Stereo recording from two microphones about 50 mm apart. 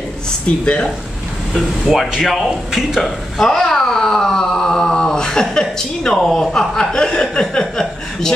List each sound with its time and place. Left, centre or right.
1.9 s speech: centre